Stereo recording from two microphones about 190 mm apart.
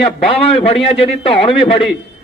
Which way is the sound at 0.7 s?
30° left (ahead or behind).